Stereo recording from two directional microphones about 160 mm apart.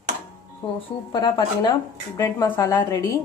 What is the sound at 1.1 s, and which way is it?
Speech, 25° left (ahead or behind).